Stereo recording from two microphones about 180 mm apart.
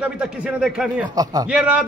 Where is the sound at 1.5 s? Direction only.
5° right (ahead or behind).